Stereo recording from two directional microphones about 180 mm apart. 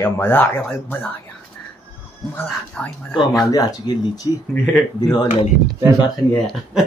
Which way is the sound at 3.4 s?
20° left (ahead or behind).